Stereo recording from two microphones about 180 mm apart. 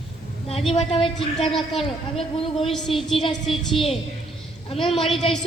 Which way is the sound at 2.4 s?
30° left (ahead or behind).